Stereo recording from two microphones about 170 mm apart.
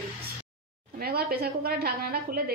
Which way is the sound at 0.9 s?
60° right (ahead or behind).